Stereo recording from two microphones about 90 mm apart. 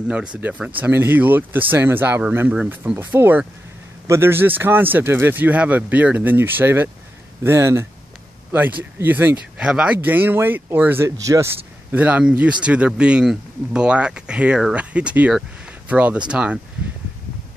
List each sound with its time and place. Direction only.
0.1 s speech: 10° right (ahead or behind)
11.1 s speech: 35° right (ahead or behind)
11.9 s speech: 15° right (ahead or behind)
15.6 s a sound: 15° right (ahead or behind)
16.3 s speech: 15° right (ahead or behind)